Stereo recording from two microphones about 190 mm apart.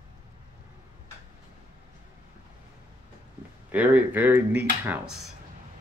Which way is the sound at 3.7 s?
10° right (ahead or behind).